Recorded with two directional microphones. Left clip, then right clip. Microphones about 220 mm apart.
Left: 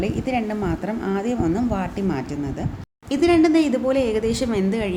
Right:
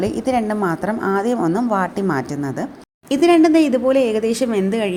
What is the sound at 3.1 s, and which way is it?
A woman's voice, 20° right (ahead or behind).